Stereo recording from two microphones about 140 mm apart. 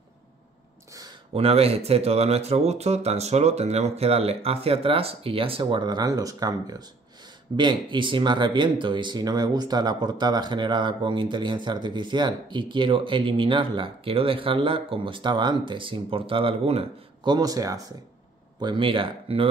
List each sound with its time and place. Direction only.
1.3 s speech: 45° right (ahead or behind)
17.3 s speech: 25° right (ahead or behind)